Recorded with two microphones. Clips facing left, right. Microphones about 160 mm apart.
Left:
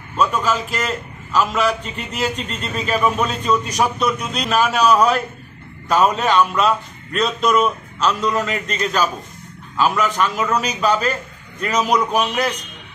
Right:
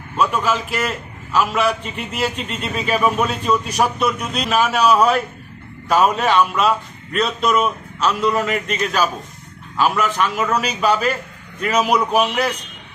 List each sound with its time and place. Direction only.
0.2 s a man's voice: 5° right (ahead or behind)